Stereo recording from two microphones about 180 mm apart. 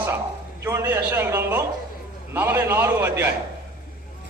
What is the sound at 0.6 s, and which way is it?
A man's voice, 15° right (ahead or behind).